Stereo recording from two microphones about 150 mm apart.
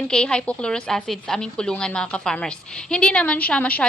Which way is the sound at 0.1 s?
5° left (ahead or behind).